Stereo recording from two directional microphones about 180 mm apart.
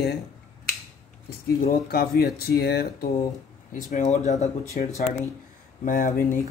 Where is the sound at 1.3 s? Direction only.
55° left (ahead or behind).